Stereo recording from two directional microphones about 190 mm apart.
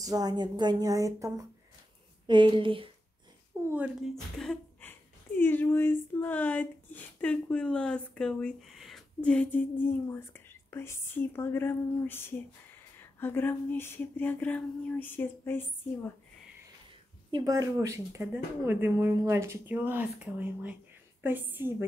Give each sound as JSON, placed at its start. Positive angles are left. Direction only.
{"t": 0.0, "sound": "speech", "side_deg": -20}
{"t": 3.7, "sound": "a woman's voice", "side_deg": -5}
{"t": 17.3, "sound": "speech", "side_deg": -15}